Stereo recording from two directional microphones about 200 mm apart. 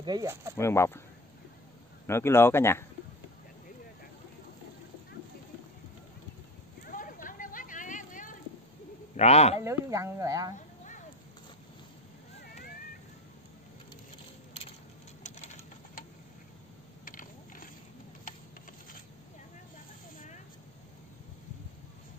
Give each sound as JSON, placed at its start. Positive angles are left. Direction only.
{"t": 0.0, "sound": "speech", "side_deg": -20}
{"t": 0.6, "sound": "speech", "side_deg": 15}
{"t": 2.0, "sound": "speech", "side_deg": 10}
{"t": 6.8, "sound": "a sound", "side_deg": 45}
{"t": 9.1, "sound": "a man's voice", "side_deg": 35}
{"t": 9.6, "sound": "speech", "side_deg": -15}
{"t": 15.2, "sound": "a sound", "side_deg": 35}
{"t": 17.0, "sound": "mechanisms", "side_deg": 45}